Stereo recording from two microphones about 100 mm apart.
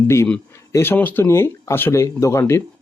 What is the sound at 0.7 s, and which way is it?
Speech, 20° left (ahead or behind).